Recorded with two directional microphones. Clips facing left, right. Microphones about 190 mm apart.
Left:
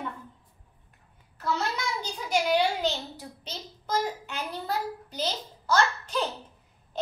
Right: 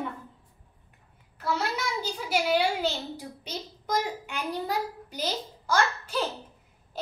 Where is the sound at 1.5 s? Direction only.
5° right (ahead or behind).